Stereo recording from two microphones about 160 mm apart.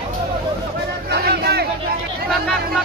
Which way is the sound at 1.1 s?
90° right.